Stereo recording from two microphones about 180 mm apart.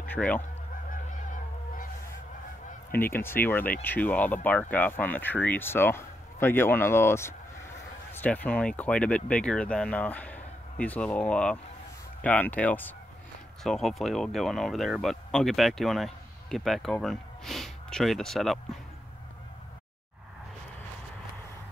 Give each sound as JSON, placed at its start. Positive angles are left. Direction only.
{"t": 0.1, "sound": "goose", "side_deg": 10}
{"t": 0.8, "sound": "goose", "side_deg": 50}
{"t": 2.9, "sound": "speech", "side_deg": 10}